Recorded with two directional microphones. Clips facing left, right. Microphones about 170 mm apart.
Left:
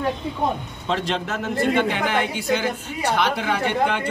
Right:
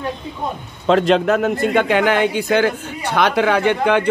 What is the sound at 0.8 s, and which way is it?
Speech, 90° right.